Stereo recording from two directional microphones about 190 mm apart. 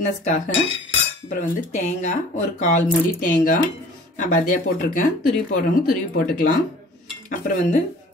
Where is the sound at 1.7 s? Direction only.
40° left (ahead or behind).